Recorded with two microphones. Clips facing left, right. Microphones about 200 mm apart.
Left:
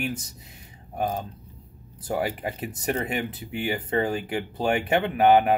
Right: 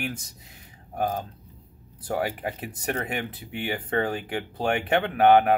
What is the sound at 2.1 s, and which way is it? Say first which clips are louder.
Speech: left 1 dB; 5° left (ahead or behind).